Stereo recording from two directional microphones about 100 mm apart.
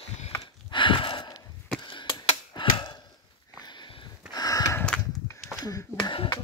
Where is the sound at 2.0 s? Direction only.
45° left (ahead or behind).